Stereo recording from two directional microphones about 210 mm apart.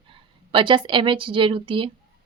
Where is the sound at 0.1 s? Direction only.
25° right (ahead or behind).